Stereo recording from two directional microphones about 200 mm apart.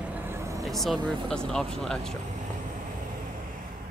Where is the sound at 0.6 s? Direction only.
Centre (ahead or behind).